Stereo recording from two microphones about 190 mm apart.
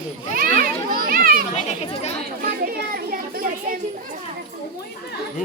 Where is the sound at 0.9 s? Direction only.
50° right (ahead or behind).